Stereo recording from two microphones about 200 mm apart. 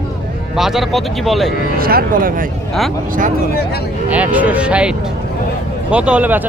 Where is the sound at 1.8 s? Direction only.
50° right (ahead or behind).